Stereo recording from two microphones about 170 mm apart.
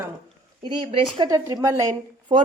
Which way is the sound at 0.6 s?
30° right (ahead or behind).